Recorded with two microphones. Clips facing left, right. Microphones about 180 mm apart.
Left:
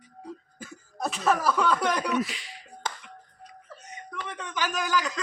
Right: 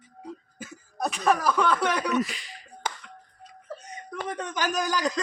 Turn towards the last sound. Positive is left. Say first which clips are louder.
# right 2 dB
turn(degrees=-40)  # may be behind; listen again after turning